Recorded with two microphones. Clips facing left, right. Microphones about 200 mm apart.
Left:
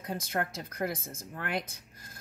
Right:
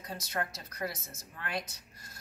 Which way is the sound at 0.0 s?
55° left (ahead or behind).